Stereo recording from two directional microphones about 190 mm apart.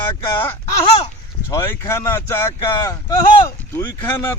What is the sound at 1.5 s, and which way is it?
Speech, 15° left (ahead or behind).